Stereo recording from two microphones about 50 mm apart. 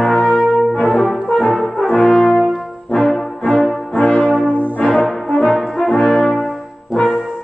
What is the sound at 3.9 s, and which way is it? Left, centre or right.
Brass instrument, centre.